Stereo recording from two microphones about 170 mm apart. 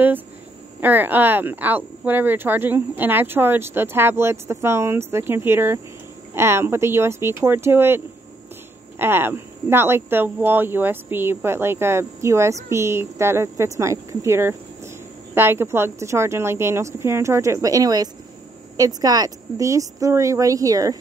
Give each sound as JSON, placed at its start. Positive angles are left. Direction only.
{"t": 0.7, "sound": "speech", "side_deg": -10}